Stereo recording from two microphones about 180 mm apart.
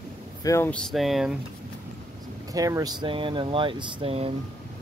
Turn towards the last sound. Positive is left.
turn(degrees=-35)  # may be behind; listen again after turning